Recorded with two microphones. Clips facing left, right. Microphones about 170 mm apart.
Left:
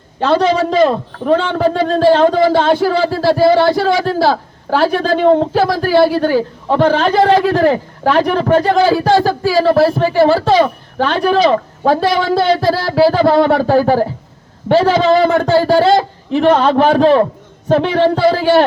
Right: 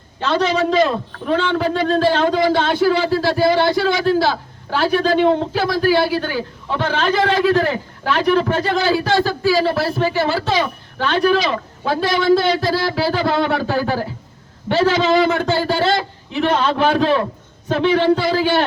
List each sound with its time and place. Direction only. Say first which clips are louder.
0.3 s a man's voice: left 4 dB; 35° left (ahead or behind)
17.7 s a man's voice: left 3 dB; 35° left (ahead or behind)